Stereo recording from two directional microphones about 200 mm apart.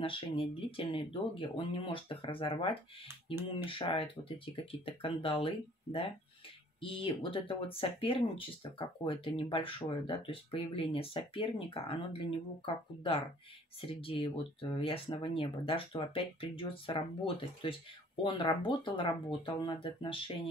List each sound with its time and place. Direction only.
0.0 s speech: 25° left (ahead or behind)